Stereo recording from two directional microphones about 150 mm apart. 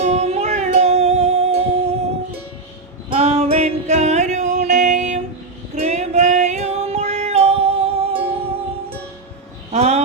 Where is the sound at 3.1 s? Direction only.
45° right (ahead or behind).